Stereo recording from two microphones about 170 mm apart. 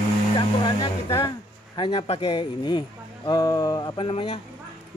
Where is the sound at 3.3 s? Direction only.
20° left (ahead or behind).